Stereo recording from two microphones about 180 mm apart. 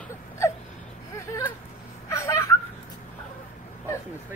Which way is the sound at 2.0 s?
15° left (ahead or behind).